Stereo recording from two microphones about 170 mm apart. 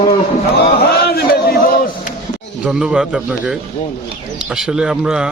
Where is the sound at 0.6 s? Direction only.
65° left (ahead or behind).